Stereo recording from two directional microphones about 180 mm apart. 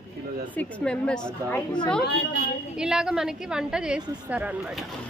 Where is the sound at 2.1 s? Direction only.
65° left (ahead or behind).